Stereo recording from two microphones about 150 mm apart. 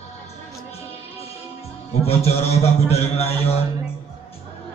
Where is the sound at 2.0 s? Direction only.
45° left (ahead or behind).